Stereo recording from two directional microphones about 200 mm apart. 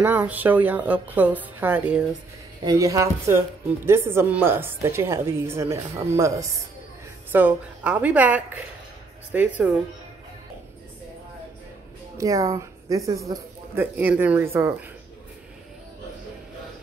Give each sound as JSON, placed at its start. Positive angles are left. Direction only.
{"t": 0.0, "sound": "speech", "side_deg": -10}
{"t": 2.6, "sound": "speech", "side_deg": -20}
{"t": 7.3, "sound": "speech", "side_deg": -5}
{"t": 12.2, "sound": "a woman's voice", "side_deg": -15}